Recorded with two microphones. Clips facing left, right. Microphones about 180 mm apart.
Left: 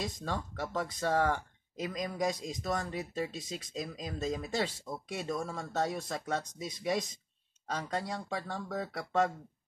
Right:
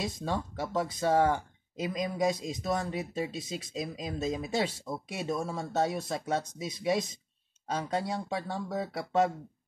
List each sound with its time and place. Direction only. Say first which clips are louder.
0.0 s speech: right 3 dB; 5° right (ahead or behind)
5.3 s speech: right 4 dB; 25° right (ahead or behind)
5.7 s speech: right 4 dB; 5° right (ahead or behind)